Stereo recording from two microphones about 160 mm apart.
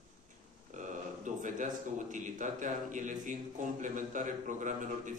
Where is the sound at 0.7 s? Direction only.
50° right (ahead or behind).